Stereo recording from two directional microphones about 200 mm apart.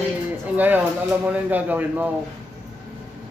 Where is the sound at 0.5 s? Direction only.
10° right (ahead or behind).